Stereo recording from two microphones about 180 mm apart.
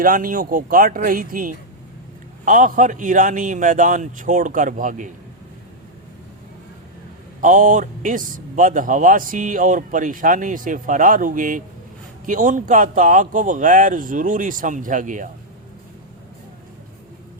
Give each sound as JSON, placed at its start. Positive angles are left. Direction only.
{"t": 0.0, "sound": "speech", "side_deg": -50}
{"t": 7.4, "sound": "speech", "side_deg": -45}